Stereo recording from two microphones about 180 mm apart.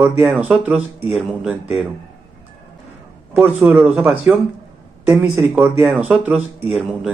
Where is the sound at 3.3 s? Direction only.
5° right (ahead or behind).